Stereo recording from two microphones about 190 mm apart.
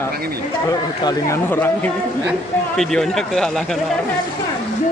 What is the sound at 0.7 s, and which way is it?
A man's voice, 15° left (ahead or behind).